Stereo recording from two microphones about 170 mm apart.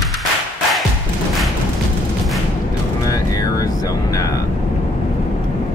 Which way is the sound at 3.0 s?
20° left (ahead or behind).